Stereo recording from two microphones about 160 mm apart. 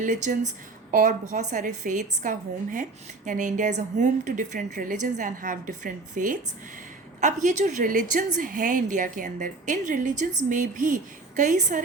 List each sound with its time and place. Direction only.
0.0 s a woman's voice: 50° right (ahead or behind)
7.4 s a woman's voice: 50° right (ahead or behind)